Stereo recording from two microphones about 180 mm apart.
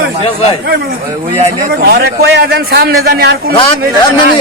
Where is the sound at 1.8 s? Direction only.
65° right (ahead or behind).